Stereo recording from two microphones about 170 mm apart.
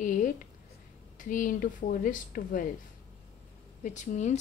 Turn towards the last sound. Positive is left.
turn(degrees=45)  # may be behind; listen again after turning